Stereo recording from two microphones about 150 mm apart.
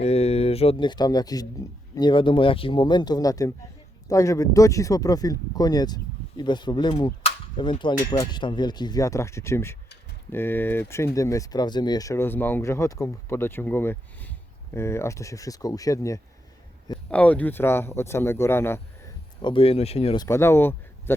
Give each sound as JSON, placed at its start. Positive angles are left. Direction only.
{"t": 0.0, "sound": "speech", "side_deg": 45}
{"t": 17.1, "sound": "speech", "side_deg": 10}
{"t": 19.4, "sound": "speech", "side_deg": 35}
{"t": 20.1, "sound": "speech", "side_deg": 20}